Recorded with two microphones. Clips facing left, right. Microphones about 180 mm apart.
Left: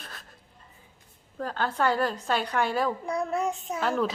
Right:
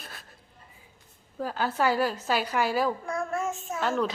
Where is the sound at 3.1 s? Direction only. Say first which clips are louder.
Left 2 dB; 20° left (ahead or behind).